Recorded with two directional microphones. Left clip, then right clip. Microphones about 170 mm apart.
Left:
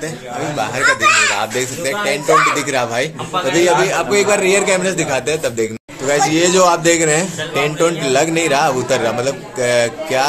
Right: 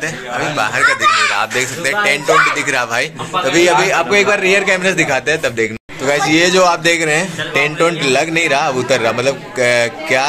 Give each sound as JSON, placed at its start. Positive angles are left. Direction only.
{"t": 0.7, "sound": "a child's voice", "side_deg": -30}
{"t": 1.4, "sound": "speech", "side_deg": 25}
{"t": 3.4, "sound": "a man's voice", "side_deg": 10}